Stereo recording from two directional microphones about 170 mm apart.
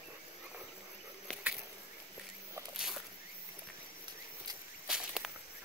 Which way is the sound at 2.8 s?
Centre (ahead or behind).